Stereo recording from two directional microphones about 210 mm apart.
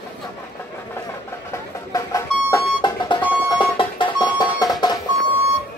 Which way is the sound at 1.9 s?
15° left (ahead or behind).